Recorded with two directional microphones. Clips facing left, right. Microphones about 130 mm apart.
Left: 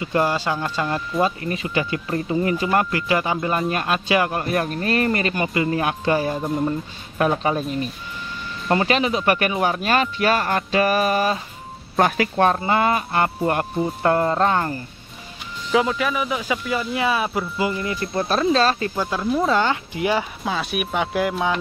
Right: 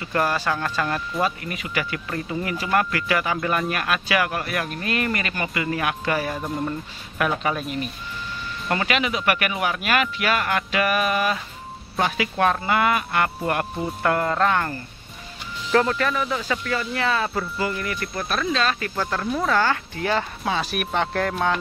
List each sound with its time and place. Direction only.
0.0 s speech: 20° left (ahead or behind)
1.2 s speech: 30° left (ahead or behind)
15.7 s speech: 5° left (ahead or behind); by 18.9 s 35° left (ahead or behind)
18.9 s speech: 10° left (ahead or behind)
20.4 s speech: centre (ahead or behind)